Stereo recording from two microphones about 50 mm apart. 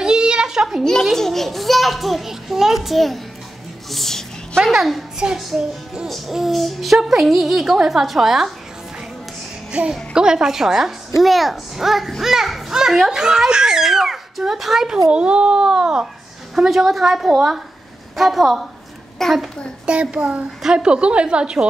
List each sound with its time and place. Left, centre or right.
0.0 s a sound: centre
1.1 s a child's voice: centre
3.9 s a sound: centre
4.6 s a child's voice: centre
5.2 s a child's voice: centre
9.7 s a child's voice: centre
14.9 s a child's voice: centre
19.9 s a woman's voice: right